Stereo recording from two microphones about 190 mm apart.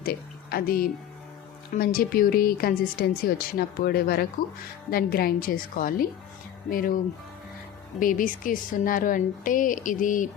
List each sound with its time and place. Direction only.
0.0 s speech: 50° left (ahead or behind)
7.9 s speech: 45° left (ahead or behind)